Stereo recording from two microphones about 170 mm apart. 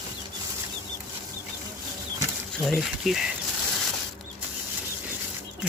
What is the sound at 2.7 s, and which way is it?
Speech, centre (ahead or behind).